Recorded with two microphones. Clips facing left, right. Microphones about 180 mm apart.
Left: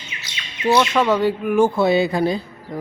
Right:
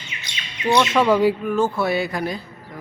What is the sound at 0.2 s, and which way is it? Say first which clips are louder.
Bird: left 3 dB; 5° left (ahead or behind).